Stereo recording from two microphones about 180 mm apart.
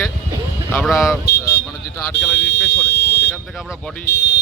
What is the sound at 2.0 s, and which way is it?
Speech, 10° left (ahead or behind).